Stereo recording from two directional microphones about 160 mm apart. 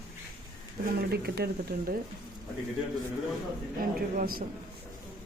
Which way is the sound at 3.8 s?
65° right (ahead or behind).